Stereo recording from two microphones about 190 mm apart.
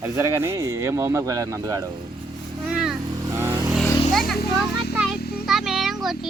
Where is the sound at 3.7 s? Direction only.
Centre (ahead or behind).